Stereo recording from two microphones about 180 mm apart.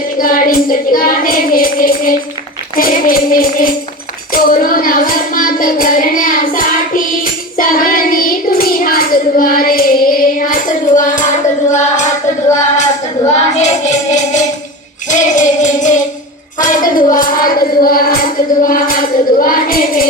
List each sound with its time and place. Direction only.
0.2 s child singing: 50° left (ahead or behind)
7.5 s hands: 50° left (ahead or behind)
13.6 s music: 40° left (ahead or behind)
18.6 s a sound: 50° left (ahead or behind)